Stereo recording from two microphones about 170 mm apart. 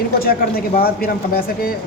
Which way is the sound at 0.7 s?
60° left (ahead or behind).